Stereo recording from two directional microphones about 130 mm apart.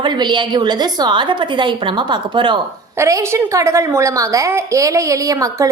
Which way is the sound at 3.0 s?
20° right (ahead or behind).